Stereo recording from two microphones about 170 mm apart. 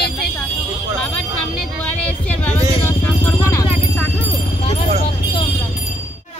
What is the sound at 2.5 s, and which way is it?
Vehicle, 10° left (ahead or behind).